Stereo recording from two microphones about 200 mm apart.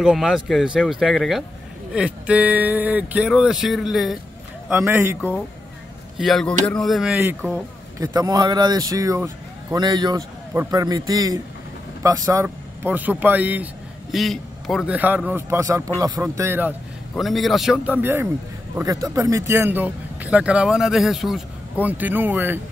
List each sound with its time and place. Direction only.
0.0 s speech: 5° right (ahead or behind)
4.6 s speech: 10° right (ahead or behind)
6.1 s a man's voice: centre (ahead or behind)
17.1 s speech: centre (ahead or behind)